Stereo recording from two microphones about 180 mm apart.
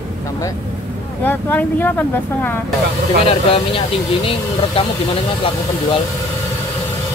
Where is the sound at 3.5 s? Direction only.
30° left (ahead or behind).